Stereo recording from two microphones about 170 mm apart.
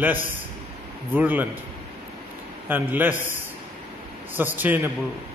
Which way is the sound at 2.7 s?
10° right (ahead or behind).